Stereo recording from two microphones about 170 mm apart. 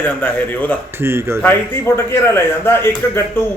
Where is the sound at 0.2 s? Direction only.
10° left (ahead or behind).